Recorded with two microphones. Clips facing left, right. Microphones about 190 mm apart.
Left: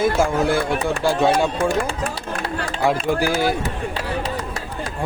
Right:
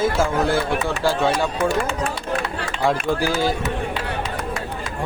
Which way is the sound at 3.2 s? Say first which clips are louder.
Left 1 dB; 45° left (ahead or behind).